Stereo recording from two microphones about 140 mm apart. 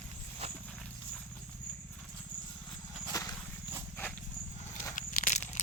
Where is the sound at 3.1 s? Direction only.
20° left (ahead or behind).